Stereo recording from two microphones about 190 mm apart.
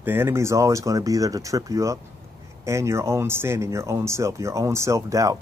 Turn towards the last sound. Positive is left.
turn(degrees=-15)  # may be behind; listen again after turning